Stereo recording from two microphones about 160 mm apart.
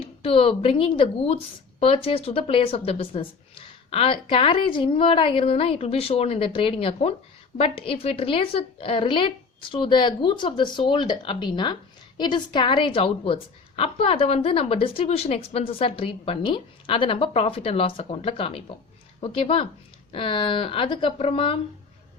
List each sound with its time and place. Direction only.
0.0 s a woman's voice: 35° left (ahead or behind)